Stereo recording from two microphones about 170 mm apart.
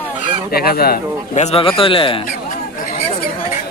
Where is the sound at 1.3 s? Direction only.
40° left (ahead or behind).